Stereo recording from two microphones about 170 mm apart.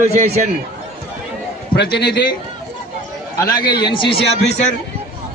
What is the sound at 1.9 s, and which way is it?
Speech, 75° left (ahead or behind).